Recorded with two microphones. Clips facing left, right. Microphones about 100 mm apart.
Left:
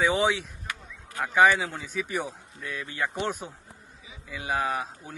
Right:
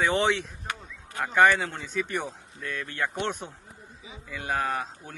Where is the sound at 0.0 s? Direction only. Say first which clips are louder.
Even; 5° left (ahead or behind).